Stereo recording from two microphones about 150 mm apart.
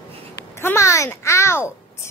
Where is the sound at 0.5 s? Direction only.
20° left (ahead or behind).